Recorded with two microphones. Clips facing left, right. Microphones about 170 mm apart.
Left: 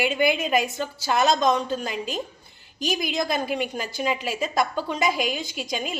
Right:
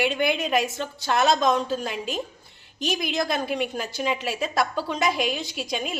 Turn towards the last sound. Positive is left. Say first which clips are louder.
# even
turn(degrees=0)  # may be behind; listen again after turning